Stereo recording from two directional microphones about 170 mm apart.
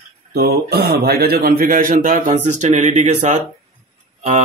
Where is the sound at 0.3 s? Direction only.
65° right (ahead or behind).